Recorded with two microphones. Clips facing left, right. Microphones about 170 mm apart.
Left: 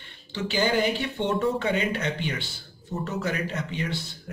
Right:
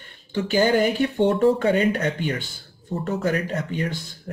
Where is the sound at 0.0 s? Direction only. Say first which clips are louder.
Right 5 dB; 45° right (ahead or behind).